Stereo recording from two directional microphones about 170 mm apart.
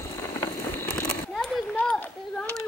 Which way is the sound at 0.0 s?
15° left (ahead or behind).